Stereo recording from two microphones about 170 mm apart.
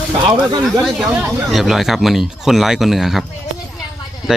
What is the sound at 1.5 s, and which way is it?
Speech, centre (ahead or behind).